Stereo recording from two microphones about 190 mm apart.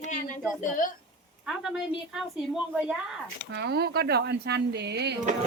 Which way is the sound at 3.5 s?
55° right (ahead or behind).